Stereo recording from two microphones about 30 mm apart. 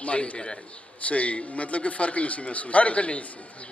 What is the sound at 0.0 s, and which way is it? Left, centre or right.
Speech, left.